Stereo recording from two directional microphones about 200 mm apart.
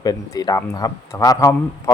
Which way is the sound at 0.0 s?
20° left (ahead or behind).